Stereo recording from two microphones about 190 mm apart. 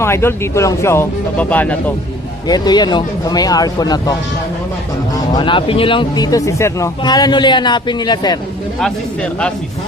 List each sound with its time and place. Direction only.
0.0 s speech: 15° left (ahead or behind)
2.5 s speech: 20° left (ahead or behind)
5.1 s speech: 25° left (ahead or behind)
8.8 s speech: 5° left (ahead or behind)